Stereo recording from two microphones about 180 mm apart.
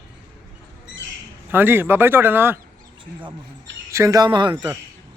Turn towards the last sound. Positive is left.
turn(degrees=-10)  # may be behind; listen again after turning